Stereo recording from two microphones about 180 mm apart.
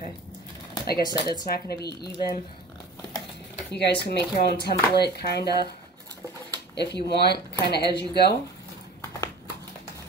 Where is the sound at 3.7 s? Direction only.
65° left (ahead or behind).